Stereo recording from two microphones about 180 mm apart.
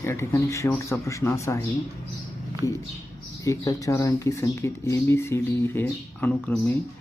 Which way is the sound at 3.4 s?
20° left (ahead or behind).